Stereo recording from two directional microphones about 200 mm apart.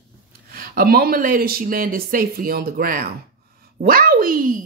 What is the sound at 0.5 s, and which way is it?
A woman's voice, 45° right (ahead or behind).